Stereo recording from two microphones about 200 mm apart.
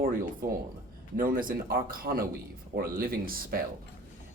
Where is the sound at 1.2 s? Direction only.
45° right (ahead or behind).